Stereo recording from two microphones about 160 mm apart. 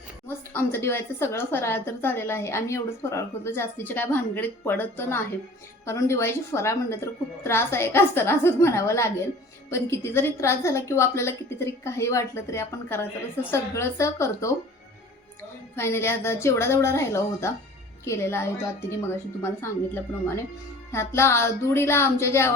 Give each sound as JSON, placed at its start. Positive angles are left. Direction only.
{"t": 0.5, "sound": "a woman's voice", "side_deg": 15}
{"t": 15.7, "sound": "a woman's voice", "side_deg": 15}